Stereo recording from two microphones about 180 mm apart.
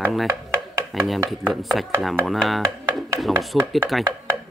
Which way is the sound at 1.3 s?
Centre (ahead or behind).